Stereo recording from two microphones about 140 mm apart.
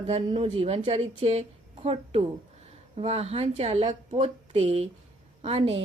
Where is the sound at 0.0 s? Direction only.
50° right (ahead or behind).